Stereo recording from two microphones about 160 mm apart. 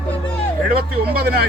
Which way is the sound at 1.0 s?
80° right.